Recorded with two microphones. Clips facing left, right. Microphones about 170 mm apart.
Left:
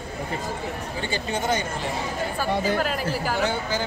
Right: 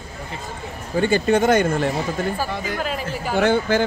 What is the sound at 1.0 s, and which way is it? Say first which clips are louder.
Speech: right 12 dB; 50° right (ahead or behind).